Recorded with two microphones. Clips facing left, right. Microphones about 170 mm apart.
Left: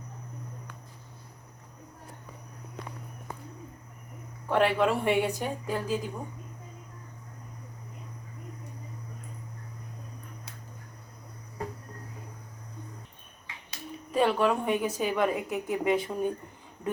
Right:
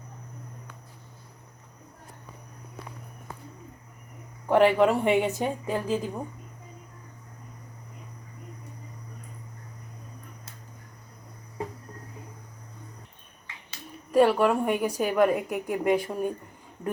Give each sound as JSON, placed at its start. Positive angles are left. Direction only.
{"t": 4.4, "sound": "a woman's voice", "side_deg": -15}
{"t": 14.1, "sound": "a woman's voice", "side_deg": -10}